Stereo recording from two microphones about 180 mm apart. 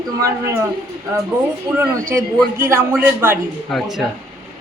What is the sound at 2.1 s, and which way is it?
Speech, 15° right (ahead or behind).